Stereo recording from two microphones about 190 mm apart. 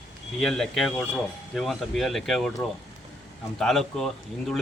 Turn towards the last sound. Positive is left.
turn(degrees=0)  # may be behind; listen again after turning